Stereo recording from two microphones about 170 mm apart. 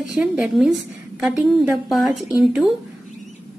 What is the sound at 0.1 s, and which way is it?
A woman's voice, 5° right (ahead or behind).